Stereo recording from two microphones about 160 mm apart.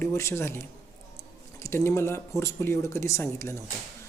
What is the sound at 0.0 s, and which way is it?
Speech, 15° left (ahead or behind).